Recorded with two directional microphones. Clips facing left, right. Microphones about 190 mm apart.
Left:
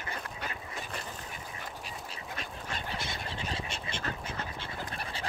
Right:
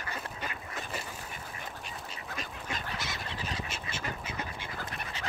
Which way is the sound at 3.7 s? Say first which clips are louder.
Left 1 dB; 5° right (ahead or behind).